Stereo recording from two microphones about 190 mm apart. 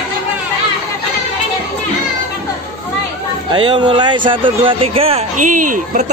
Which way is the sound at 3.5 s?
25° right (ahead or behind).